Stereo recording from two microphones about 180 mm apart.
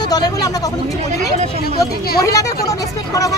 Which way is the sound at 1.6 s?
60° left (ahead or behind).